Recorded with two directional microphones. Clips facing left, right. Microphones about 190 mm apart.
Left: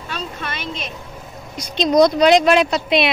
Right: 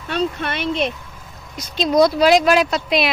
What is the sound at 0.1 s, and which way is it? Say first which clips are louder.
Speech: right 8 dB; 65° right (ahead or behind).